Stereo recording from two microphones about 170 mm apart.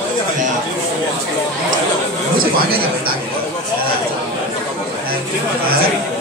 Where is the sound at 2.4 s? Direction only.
60° right (ahead or behind).